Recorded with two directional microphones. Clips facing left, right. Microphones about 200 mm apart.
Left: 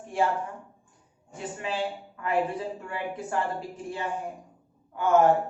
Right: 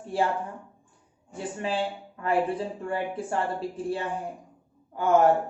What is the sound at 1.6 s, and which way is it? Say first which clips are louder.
Speech: right 2 dB; 30° right (ahead or behind).